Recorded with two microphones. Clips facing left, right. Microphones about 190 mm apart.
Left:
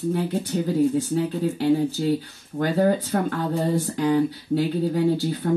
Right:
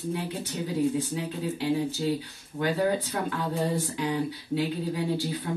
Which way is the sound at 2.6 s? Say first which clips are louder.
Left 5 dB; 50° left (ahead or behind).